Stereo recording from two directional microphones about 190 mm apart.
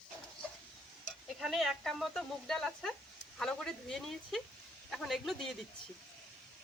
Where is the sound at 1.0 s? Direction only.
Centre (ahead or behind).